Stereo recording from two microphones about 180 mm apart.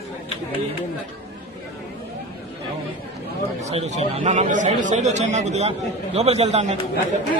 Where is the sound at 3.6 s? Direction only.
40° right (ahead or behind).